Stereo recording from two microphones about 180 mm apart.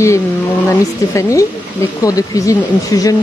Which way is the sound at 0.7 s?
15° left (ahead or behind).